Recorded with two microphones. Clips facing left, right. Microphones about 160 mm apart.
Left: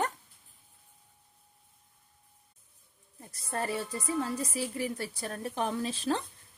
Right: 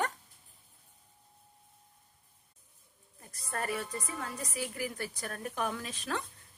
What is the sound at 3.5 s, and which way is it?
A woman's voice, 30° left (ahead or behind).